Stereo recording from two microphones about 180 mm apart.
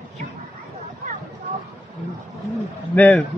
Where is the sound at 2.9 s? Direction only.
10° left (ahead or behind).